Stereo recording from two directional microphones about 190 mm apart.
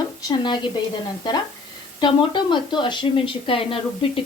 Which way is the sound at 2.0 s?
25° left (ahead or behind).